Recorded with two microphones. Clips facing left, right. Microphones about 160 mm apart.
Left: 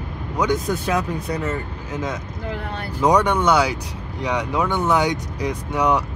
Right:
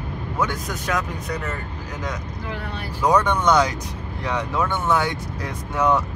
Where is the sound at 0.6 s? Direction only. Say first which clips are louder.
Left 4 dB; 30° left (ahead or behind).